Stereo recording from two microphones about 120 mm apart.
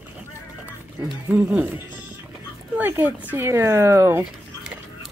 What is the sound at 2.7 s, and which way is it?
Speech, 20° right (ahead or behind).